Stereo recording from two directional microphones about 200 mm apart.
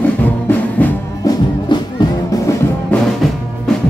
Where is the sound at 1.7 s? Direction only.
20° left (ahead or behind).